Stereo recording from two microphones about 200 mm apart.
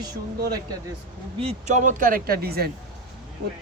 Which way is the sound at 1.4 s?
35° right (ahead or behind).